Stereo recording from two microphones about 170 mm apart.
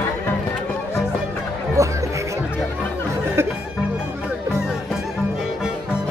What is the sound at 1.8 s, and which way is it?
Music, 20° right (ahead or behind).